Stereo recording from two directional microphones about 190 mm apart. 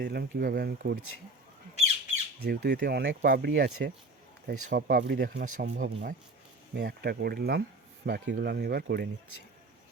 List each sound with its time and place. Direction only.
0.0 s speech: 55° right (ahead or behind)
2.4 s speech: 55° right (ahead or behind)
3.2 s speech: 55° right (ahead or behind)